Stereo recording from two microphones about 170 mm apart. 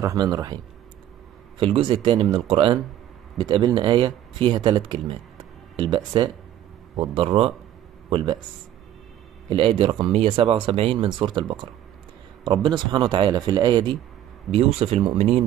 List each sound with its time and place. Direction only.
0.0 s speech: 20° right (ahead or behind)
1.6 s speech: 30° right (ahead or behind)
9.5 s speech: 30° right (ahead or behind)
14.5 s speech: 40° right (ahead or behind)